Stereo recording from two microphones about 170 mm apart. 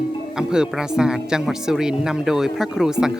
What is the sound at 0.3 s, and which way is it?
Speech, 5° right (ahead or behind).